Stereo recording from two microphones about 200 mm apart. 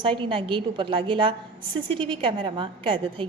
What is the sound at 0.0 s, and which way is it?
A woman's voice, 25° right (ahead or behind).